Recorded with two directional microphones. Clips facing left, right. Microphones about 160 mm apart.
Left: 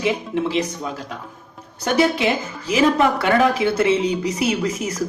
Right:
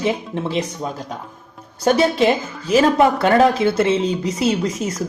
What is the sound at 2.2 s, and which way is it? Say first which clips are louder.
Speech: right 4 dB; 30° right (ahead or behind).